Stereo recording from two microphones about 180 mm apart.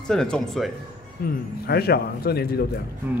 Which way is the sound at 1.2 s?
60° left (ahead or behind).